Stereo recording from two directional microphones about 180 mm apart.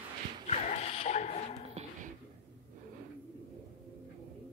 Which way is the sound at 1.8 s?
45° right (ahead or behind).